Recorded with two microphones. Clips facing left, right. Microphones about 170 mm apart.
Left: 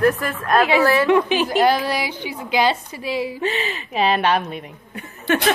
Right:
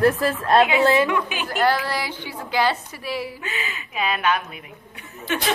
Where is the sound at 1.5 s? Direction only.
15° left (ahead or behind).